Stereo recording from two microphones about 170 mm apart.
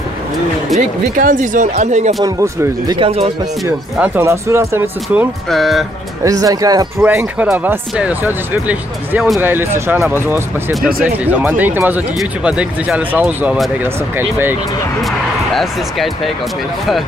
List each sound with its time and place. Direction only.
0.7 s speech: 50° right (ahead or behind)
2.2 s speech: 15° right (ahead or behind)
3.0 s speech: 35° right (ahead or behind)
3.9 s speech: 10° right (ahead or behind)
5.5 s speech: centre (ahead or behind)
6.2 s speech: 20° right (ahead or behind)
7.0 s speech: 10° right (ahead or behind)
15.5 s speech: centre (ahead or behind)